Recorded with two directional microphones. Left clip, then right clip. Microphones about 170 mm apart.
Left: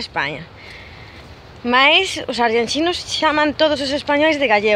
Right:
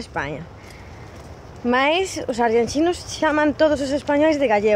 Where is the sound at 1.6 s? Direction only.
Centre (ahead or behind).